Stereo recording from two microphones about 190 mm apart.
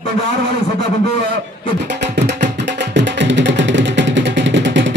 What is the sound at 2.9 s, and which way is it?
Music, 70° right (ahead or behind).